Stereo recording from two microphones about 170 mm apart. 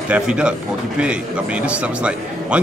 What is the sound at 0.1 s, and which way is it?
Speech, 5° right (ahead or behind).